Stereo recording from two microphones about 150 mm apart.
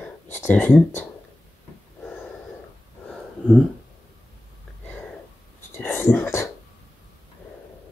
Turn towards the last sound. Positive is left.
turn(degrees=15)  # may be behind; listen again after turning